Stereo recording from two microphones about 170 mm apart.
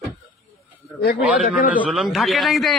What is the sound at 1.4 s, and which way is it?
Speech, 50° left (ahead or behind).